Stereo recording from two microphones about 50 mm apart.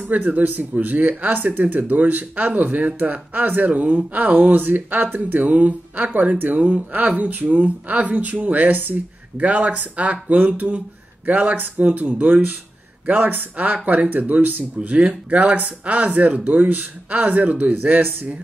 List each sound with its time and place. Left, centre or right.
0.1 s speech: right